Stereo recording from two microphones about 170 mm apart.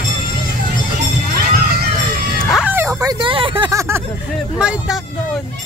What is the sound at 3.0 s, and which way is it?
Vehicle, 25° right (ahead or behind).